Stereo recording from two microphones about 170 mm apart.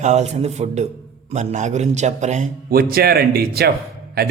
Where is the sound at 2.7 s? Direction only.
65° right (ahead or behind).